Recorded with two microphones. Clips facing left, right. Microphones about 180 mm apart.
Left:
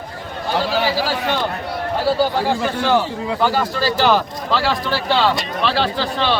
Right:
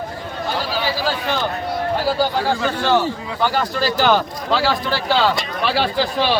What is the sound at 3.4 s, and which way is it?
A man's voice, centre (ahead or behind).